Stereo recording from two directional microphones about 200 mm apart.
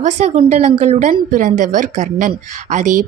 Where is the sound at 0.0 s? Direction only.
35° right (ahead or behind).